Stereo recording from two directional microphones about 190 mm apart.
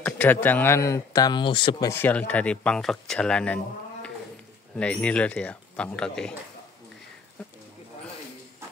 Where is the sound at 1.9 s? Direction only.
10° left (ahead or behind).